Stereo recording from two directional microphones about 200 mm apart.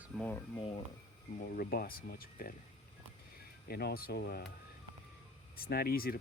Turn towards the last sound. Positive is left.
turn(degrees=50)  # may be behind; listen again after turning